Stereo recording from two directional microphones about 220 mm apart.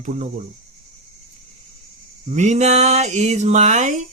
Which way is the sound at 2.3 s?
30° right (ahead or behind).